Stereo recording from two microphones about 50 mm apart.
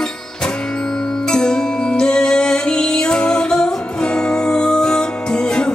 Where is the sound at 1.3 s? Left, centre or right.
Centre.